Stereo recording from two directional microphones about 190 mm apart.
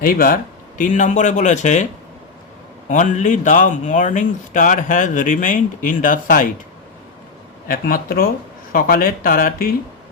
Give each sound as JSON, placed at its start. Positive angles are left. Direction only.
{"t": 0.0, "sound": "speech", "side_deg": 50}
{"t": 2.9, "sound": "speech", "side_deg": 40}
{"t": 7.7, "sound": "speech", "side_deg": 50}